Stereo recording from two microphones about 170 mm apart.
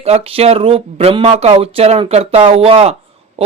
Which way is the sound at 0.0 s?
35° right (ahead or behind).